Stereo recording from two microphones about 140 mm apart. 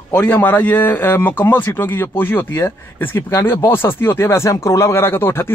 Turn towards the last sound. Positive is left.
turn(degrees=15)  # may be behind; listen again after turning